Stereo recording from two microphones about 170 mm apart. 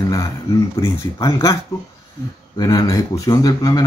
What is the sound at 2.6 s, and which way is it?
Speech, 20° left (ahead or behind).